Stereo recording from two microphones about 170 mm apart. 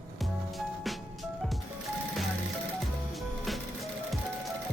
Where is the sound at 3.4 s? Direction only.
Centre (ahead or behind).